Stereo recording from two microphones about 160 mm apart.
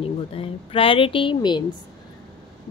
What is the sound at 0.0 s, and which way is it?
Speech, 35° left (ahead or behind).